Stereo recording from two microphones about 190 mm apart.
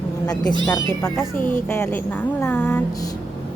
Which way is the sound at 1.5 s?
10° left (ahead or behind).